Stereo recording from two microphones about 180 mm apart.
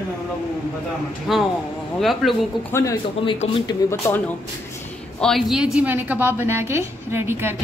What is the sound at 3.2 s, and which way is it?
Speech, 30° left (ahead or behind).